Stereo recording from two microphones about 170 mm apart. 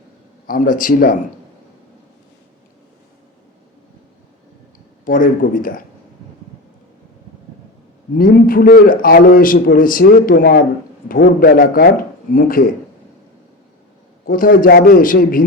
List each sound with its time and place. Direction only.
0.4 s speech: 55° left (ahead or behind)
5.0 s a man's voice: 55° left (ahead or behind)
8.1 s a man's voice: 55° left (ahead or behind)
14.3 s a man's voice: 55° left (ahead or behind)